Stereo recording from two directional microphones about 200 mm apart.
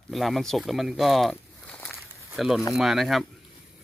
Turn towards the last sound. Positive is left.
turn(degrees=0)  # may be behind; listen again after turning